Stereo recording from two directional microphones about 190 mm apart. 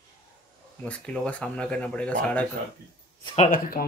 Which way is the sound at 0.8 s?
5° left (ahead or behind).